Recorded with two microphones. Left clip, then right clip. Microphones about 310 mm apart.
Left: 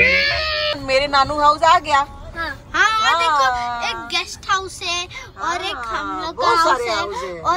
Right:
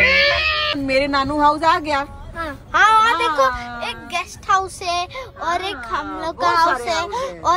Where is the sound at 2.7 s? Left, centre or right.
Centre.